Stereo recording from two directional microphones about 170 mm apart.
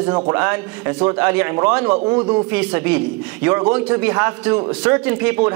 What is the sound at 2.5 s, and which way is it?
A man's voice, 10° right (ahead or behind).